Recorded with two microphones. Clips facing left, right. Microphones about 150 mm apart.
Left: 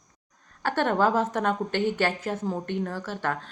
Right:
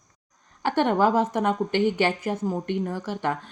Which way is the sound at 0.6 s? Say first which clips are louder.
Right 2 dB; 15° right (ahead or behind).